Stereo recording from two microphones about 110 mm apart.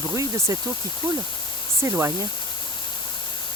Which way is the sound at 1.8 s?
25° right (ahead or behind).